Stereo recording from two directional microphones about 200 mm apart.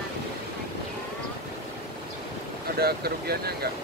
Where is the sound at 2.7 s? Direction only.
50° right (ahead or behind).